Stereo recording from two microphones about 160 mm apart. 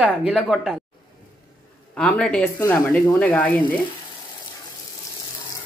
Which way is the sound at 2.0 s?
5° left (ahead or behind).